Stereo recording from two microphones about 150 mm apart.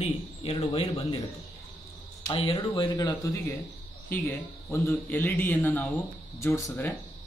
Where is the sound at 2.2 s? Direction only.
40° left (ahead or behind).